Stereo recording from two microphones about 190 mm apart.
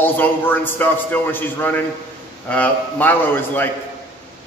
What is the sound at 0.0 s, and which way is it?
A man's voice, 10° left (ahead or behind).